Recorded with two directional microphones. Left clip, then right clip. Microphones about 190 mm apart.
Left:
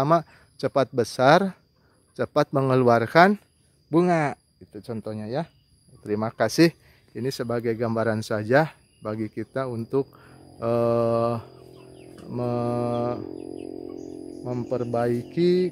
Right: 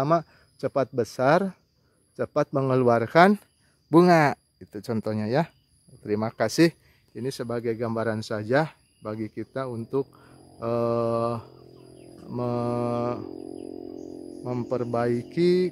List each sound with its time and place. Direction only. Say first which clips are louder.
0.0 s speech: left 2 dB; 5° right (ahead or behind)
3.9 s speech: right 4 dB; 30° right (ahead or behind)
6.0 s speech: left 1 dB; 15° right (ahead or behind)
14.4 s speech: even; 15° right (ahead or behind)